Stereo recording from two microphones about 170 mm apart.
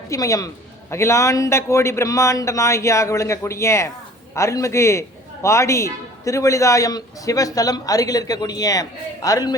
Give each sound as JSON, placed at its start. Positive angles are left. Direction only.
{"t": 0.1, "sound": "a man's voice", "side_deg": 20}